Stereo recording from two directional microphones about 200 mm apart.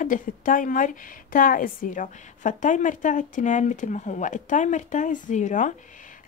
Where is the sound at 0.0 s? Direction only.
40° left (ahead or behind).